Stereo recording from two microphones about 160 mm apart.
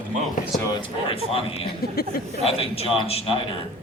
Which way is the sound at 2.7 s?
40° left (ahead or behind).